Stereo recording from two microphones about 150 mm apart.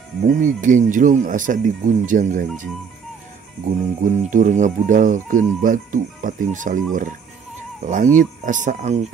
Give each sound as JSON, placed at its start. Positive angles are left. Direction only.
{"t": 0.3, "sound": "speech", "side_deg": -55}
{"t": 4.0, "sound": "speech", "side_deg": -55}